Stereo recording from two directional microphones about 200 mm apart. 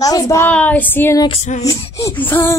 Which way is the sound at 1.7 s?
15° left (ahead or behind).